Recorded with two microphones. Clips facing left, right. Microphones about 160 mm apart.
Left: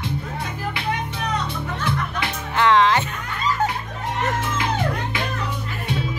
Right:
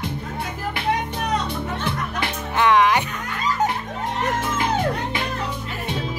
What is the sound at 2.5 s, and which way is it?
Music, 15° right (ahead or behind).